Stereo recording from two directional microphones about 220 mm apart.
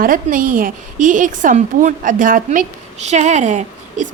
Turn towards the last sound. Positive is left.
turn(degrees=-35)  # may be behind; listen again after turning